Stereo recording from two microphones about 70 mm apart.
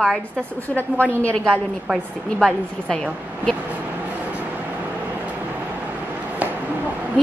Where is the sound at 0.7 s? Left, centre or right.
Left.